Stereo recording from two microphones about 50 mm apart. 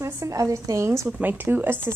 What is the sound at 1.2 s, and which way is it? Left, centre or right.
Speech, right.